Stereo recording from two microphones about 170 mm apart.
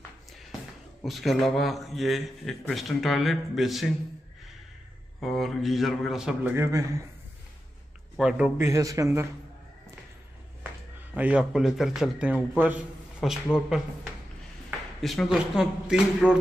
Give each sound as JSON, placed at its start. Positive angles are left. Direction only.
{"t": 0.3, "sound": "a sound", "side_deg": 0}
{"t": 1.0, "sound": "a man's voice", "side_deg": 0}
{"t": 5.2, "sound": "a man's voice", "side_deg": 0}
{"t": 6.5, "sound": "a man's voice", "side_deg": -15}
{"t": 8.2, "sound": "a man's voice", "side_deg": -5}
{"t": 8.6, "sound": "speech", "side_deg": -20}
{"t": 11.1, "sound": "a man's voice", "side_deg": -5}
{"t": 15.0, "sound": "a man's voice", "side_deg": 0}